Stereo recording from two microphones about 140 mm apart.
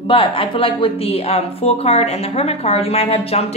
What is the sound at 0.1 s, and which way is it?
A woman's voice, 40° left (ahead or behind).